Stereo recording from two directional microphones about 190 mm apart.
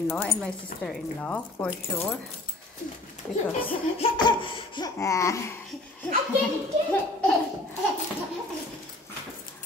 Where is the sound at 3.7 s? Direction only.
25° left (ahead or behind).